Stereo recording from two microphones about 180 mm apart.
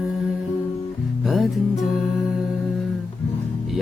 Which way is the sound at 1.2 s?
Centre (ahead or behind).